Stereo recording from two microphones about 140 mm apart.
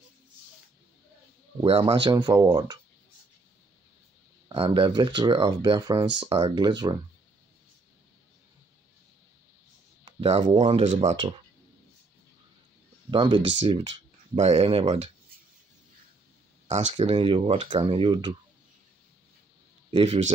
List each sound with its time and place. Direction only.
1.6 s speech: 40° right (ahead or behind)
4.5 s speech: 35° right (ahead or behind)
10.2 s speech: 45° right (ahead or behind)
13.1 s speech: 40° right (ahead or behind)
14.4 s speech: 50° right (ahead or behind)
16.6 s speech: 55° right (ahead or behind); by 18.3 s 35° right (ahead or behind)
19.9 s speech: 40° right (ahead or behind)